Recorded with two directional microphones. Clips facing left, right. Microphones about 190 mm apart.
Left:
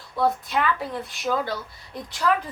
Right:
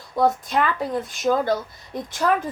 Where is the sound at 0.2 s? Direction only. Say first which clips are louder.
Right 3 dB; 45° right (ahead or behind).